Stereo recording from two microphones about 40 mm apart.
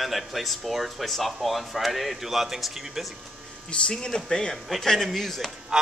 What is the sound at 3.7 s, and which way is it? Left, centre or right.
A man's voice, left.